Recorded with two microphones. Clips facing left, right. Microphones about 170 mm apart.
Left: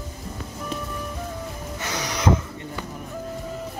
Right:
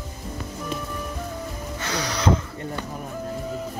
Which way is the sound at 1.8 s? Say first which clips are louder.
Right 1 dB; 20° left (ahead or behind).